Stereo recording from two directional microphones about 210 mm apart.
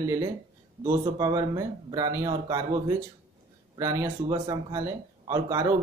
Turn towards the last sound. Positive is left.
turn(degrees=-15)  # may be behind; listen again after turning